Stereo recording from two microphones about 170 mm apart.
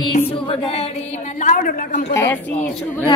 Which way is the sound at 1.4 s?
50° left (ahead or behind).